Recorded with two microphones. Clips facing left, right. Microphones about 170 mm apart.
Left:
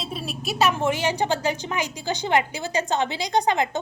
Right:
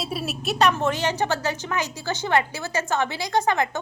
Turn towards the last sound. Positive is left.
turn(degrees=15)  # may be behind; listen again after turning